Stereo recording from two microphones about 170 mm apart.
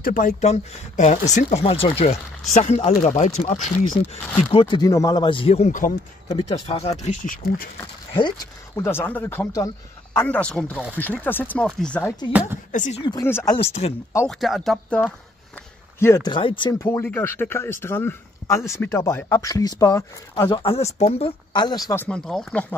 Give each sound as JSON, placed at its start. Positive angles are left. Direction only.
{"t": 0.0, "sound": "speech", "side_deg": 50}
{"t": 4.5, "sound": "speech", "side_deg": 30}
{"t": 6.5, "sound": "speech", "side_deg": 40}
{"t": 7.1, "sound": "speech", "side_deg": 55}
{"t": 8.1, "sound": "speech", "side_deg": 25}
{"t": 8.7, "sound": "speech", "side_deg": 15}
{"t": 12.3, "sound": "speech", "side_deg": -10}
{"t": 12.7, "sound": "speech", "side_deg": 45}
{"t": 13.2, "sound": "speech", "side_deg": 15}
{"t": 14.2, "sound": "a man's voice", "side_deg": 0}
{"t": 16.3, "sound": "speech", "side_deg": 30}
{"t": 22.0, "sound": "speech", "side_deg": 5}